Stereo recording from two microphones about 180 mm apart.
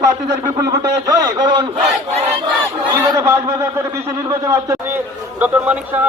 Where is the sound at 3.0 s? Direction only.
15° right (ahead or behind).